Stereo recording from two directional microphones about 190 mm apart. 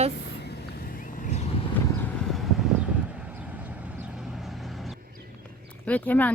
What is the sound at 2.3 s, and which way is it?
Vehicle, centre (ahead or behind).